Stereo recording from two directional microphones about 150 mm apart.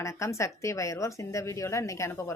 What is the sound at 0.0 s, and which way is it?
A woman's voice, 20° left (ahead or behind).